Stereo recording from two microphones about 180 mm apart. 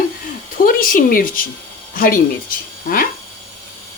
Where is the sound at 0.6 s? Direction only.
50° left (ahead or behind).